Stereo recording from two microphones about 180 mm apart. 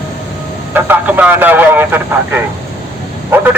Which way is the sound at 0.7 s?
10° right (ahead or behind).